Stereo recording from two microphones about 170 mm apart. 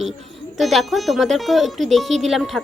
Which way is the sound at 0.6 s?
Centre (ahead or behind).